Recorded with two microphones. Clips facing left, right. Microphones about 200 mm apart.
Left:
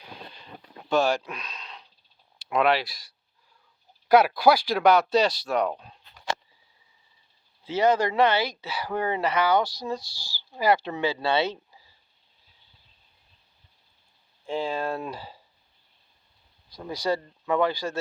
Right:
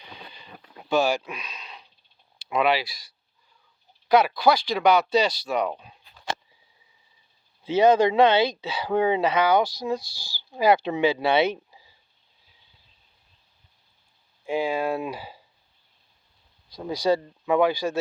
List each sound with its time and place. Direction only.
0.0 s a sound: centre (ahead or behind)
2.5 s speech: centre (ahead or behind)
4.1 s speech: 10° left (ahead or behind)
7.6 s speech: 20° right (ahead or behind)
14.4 s speech: 10° right (ahead or behind)
16.7 s speech: 15° right (ahead or behind)